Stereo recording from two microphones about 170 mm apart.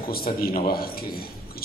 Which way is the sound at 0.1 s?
60° left (ahead or behind).